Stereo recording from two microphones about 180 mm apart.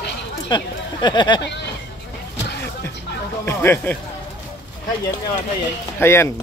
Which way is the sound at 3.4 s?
15° left (ahead or behind).